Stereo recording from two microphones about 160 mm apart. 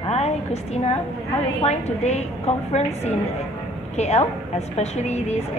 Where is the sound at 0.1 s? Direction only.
40° left (ahead or behind).